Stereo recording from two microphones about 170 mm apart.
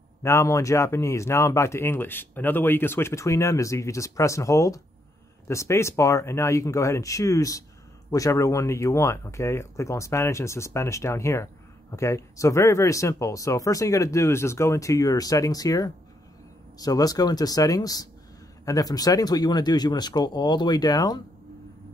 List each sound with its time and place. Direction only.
0.2 s speech: 15° left (ahead or behind)